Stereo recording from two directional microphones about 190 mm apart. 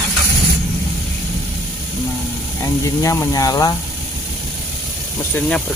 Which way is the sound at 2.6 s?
15° left (ahead or behind).